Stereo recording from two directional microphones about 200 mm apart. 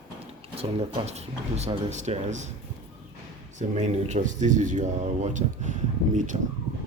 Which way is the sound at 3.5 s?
35° right (ahead or behind).